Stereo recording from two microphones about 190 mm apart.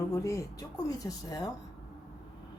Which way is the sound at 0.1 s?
15° left (ahead or behind).